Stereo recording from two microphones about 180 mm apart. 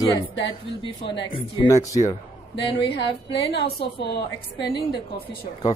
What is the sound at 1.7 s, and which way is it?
Music, 15° left (ahead or behind).